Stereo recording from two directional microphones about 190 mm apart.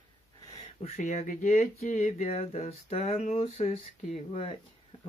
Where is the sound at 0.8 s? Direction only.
35° left (ahead or behind).